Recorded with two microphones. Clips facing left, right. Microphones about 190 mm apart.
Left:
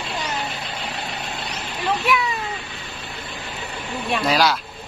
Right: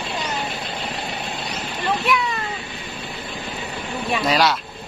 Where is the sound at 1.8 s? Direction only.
5° left (ahead or behind).